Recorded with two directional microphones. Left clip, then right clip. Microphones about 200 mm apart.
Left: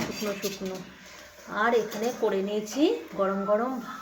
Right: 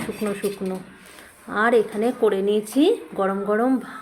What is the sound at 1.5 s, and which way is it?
Speech, 55° right (ahead or behind).